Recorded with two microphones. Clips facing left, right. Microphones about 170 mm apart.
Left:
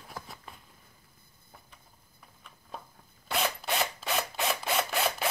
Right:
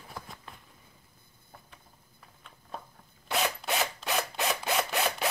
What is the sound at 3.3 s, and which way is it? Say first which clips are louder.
Mechanisms: right 1 dB; centre (ahead or behind).